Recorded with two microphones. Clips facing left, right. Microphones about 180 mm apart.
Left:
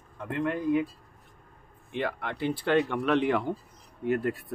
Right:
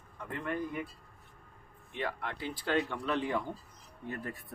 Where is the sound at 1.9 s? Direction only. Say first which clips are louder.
Left 5 dB; 70° left (ahead or behind).